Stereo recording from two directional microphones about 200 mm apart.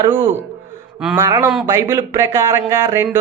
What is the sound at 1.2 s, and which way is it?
A man's voice, 15° right (ahead or behind).